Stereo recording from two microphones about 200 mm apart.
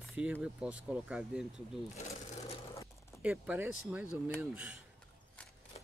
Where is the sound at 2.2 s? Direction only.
35° left (ahead or behind).